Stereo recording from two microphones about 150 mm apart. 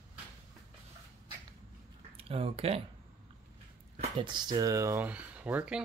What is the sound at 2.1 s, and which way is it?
Speech, 40° right (ahead or behind).